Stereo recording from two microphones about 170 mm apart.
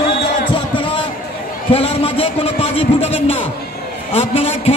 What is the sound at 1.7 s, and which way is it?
A man's voice, 35° left (ahead or behind).